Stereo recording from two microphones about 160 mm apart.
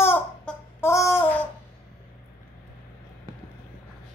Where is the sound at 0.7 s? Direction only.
15° left (ahead or behind).